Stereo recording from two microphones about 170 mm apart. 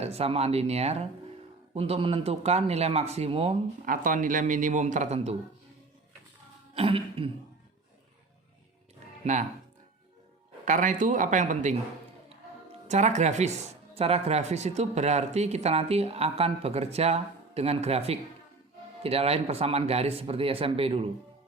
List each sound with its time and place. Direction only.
0.0 s speech: 35° right (ahead or behind)
3.8 s a man's voice: 50° right (ahead or behind)
6.7 s speech: 35° right (ahead or behind)
9.2 s a man's voice: 45° right (ahead or behind)
10.7 s a man's voice: 50° right (ahead or behind)
12.9 s a man's voice: 45° right (ahead or behind)